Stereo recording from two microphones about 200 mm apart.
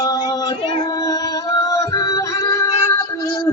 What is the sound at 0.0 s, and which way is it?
Female singing, 20° left (ahead or behind).